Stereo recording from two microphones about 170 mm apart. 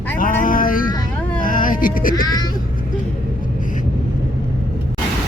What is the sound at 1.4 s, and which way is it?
Cat, 50° left (ahead or behind).